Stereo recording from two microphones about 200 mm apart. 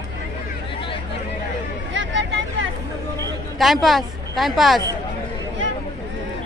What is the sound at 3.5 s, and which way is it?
A woman's voice, centre (ahead or behind).